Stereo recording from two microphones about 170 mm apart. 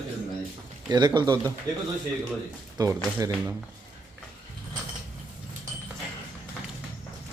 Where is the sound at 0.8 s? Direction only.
25° right (ahead or behind).